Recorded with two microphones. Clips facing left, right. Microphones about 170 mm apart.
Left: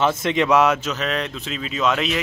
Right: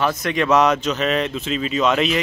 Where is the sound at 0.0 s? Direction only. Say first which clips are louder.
Left 1 dB; 25° left (ahead or behind).